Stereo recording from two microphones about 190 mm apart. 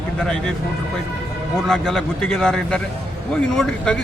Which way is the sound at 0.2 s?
5° left (ahead or behind).